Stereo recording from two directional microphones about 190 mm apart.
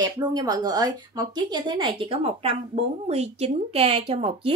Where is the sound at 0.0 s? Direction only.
20° right (ahead or behind).